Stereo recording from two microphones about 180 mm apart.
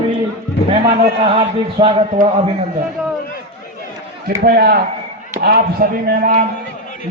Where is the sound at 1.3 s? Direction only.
30° right (ahead or behind).